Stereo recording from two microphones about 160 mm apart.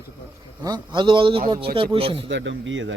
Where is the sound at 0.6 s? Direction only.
25° right (ahead or behind).